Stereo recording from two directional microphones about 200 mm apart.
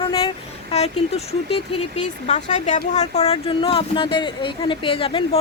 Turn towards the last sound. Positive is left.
turn(degrees=25)  # may be behind; listen again after turning